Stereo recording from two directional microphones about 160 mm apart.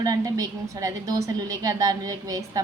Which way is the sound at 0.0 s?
20° right (ahead or behind).